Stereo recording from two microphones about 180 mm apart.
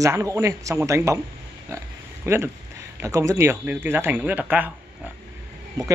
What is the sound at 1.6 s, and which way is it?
Oink, 15° right (ahead or behind).